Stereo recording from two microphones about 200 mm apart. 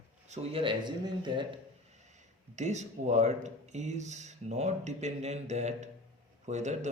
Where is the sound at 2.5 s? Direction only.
35° right (ahead or behind).